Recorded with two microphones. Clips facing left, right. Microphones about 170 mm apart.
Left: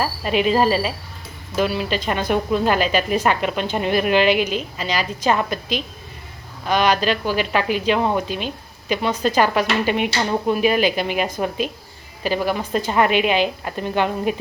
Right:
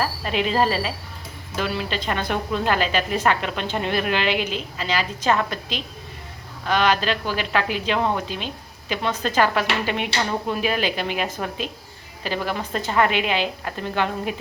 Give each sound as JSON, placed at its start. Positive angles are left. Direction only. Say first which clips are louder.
{"t": 0.3, "sound": "speech", "louder": "left 5 dB", "side_deg": 15}